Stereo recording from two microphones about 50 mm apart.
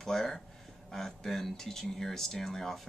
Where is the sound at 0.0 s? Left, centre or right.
Centre.